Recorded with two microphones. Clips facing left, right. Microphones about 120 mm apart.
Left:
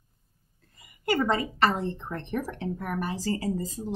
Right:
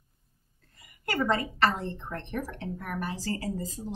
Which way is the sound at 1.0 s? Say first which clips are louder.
Left 2 dB; 15° left (ahead or behind).